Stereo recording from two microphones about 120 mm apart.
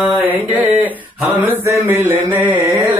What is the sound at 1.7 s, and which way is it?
Mantra, 25° right (ahead or behind).